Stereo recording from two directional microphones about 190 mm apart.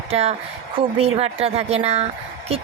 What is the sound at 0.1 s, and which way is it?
Speech, 30° right (ahead or behind).